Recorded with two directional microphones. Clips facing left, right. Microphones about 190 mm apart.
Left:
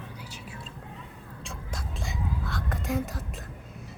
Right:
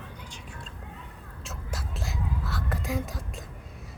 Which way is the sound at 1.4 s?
5° right (ahead or behind).